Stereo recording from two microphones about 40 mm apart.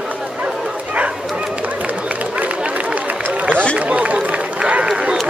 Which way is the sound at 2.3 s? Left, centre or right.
Right.